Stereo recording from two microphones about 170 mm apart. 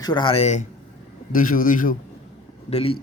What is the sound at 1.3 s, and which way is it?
Speech, 55° left (ahead or behind).